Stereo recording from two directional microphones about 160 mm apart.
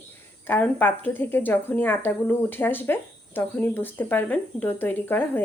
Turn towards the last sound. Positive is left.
turn(degrees=15)  # may be behind; listen again after turning